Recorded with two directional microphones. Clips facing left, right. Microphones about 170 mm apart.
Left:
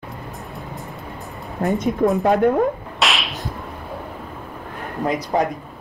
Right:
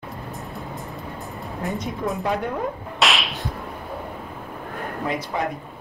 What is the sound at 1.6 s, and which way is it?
Speech, 55° left (ahead or behind).